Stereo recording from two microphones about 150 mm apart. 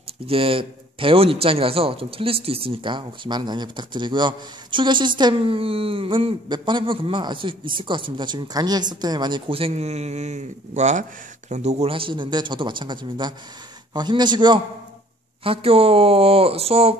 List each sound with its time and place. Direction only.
0.3 s a man's voice: 35° right (ahead or behind)
15.4 s a man's voice: 40° right (ahead or behind)